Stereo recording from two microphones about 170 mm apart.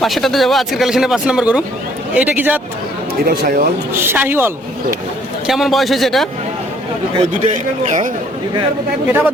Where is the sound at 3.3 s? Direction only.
55° right (ahead or behind).